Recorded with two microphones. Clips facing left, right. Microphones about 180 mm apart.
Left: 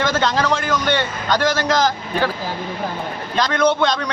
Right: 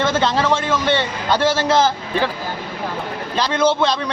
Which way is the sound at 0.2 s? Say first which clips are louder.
Right 1 dB; 5° right (ahead or behind).